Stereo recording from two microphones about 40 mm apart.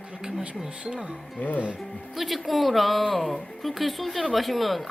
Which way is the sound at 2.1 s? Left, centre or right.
Centre.